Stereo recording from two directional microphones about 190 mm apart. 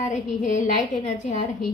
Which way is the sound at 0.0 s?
40° left (ahead or behind).